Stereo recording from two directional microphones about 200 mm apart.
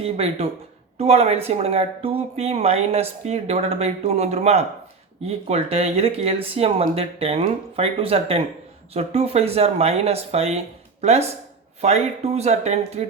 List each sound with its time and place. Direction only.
0.0 s speech: 30° right (ahead or behind)